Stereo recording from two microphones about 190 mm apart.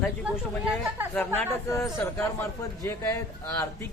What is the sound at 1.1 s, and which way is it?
Speech, 10° left (ahead or behind).